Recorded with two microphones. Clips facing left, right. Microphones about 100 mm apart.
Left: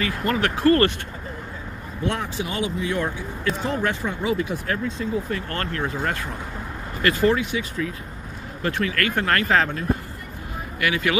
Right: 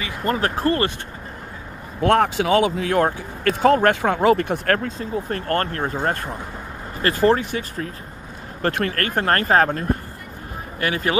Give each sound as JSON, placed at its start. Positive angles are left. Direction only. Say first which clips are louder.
{"t": 0.2, "sound": "speech", "louder": "right 1 dB", "side_deg": -35}
{"t": 2.0, "sound": "speech", "louder": "right 9 dB", "side_deg": -70}
{"t": 4.9, "sound": "speech", "louder": "even", "side_deg": -50}
{"t": 7.0, "sound": "speech", "louder": "right 2 dB", "side_deg": -40}